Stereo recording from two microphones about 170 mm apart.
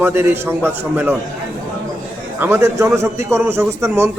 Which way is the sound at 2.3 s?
15° right (ahead or behind).